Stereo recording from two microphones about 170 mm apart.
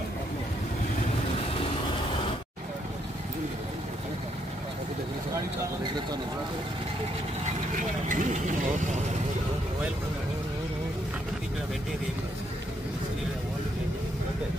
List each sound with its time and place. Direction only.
8.1 s speech: 45° right (ahead or behind)